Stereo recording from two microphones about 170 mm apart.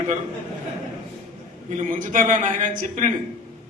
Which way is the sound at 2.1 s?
50° right (ahead or behind).